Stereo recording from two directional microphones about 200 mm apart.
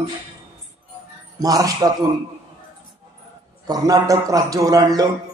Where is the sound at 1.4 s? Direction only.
20° right (ahead or behind).